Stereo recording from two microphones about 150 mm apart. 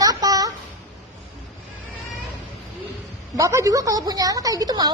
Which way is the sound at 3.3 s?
20° right (ahead or behind).